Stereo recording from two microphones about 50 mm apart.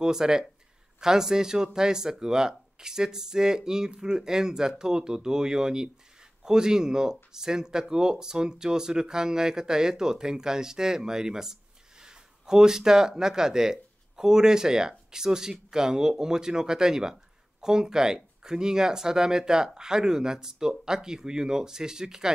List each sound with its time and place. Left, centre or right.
0.0 s speech: centre